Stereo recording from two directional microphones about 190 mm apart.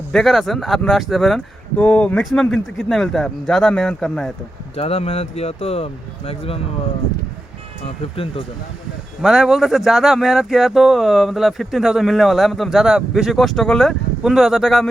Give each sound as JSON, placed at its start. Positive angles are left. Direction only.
{"t": 0.1, "sound": "speech", "side_deg": 0}
{"t": 4.8, "sound": "speech", "side_deg": 30}
{"t": 7.9, "sound": "speech", "side_deg": 30}
{"t": 9.2, "sound": "speech", "side_deg": 0}